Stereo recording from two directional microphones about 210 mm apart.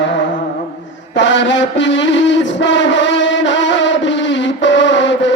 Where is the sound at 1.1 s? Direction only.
60° left (ahead or behind).